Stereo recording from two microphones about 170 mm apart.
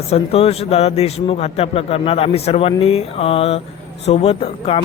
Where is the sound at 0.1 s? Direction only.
35° left (ahead or behind).